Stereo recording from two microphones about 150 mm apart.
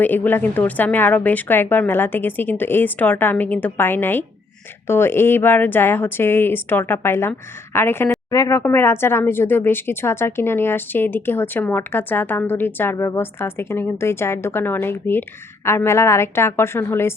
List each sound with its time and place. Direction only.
0.0 s speech: 10° left (ahead or behind)